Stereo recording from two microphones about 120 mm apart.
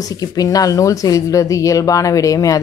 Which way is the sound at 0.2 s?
30° left (ahead or behind).